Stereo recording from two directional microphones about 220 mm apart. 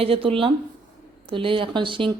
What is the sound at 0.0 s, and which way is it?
Speech, 25° right (ahead or behind).